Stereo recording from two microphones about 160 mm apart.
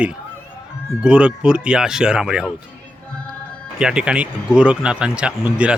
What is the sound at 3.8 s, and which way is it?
Speech, 5° right (ahead or behind).